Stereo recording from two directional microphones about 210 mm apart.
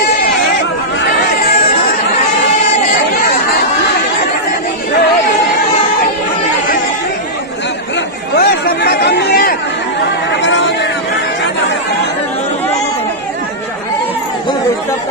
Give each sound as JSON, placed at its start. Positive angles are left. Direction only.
{"t": 8.4, "sound": "chatter", "side_deg": 50}
{"t": 10.4, "sound": "vehicle", "side_deg": 60}